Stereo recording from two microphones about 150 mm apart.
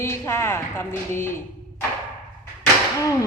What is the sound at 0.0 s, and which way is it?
A woman's voice, 15° left (ahead or behind).